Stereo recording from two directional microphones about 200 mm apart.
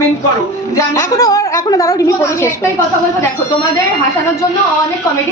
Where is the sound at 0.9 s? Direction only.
15° left (ahead or behind).